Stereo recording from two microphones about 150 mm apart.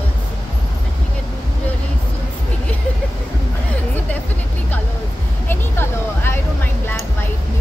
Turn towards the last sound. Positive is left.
turn(degrees=15)  # may be behind; listen again after turning